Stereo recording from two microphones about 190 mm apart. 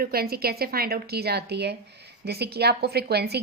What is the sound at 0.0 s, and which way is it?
A woman's voice, 55° right (ahead or behind).